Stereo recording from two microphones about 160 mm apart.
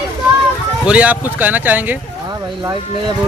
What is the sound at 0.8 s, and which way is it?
Speech, 10° right (ahead or behind).